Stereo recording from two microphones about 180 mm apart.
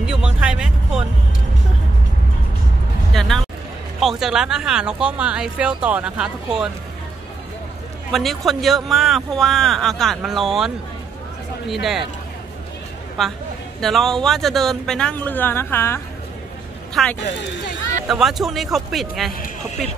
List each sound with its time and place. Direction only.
0.0 s music: 5° right (ahead or behind)
3.1 s a sound: centre (ahead or behind)
4.0 s speech: centre (ahead or behind)
8.1 s speech: centre (ahead or behind)
11.7 s speech: centre (ahead or behind)
13.2 s speech: centre (ahead or behind)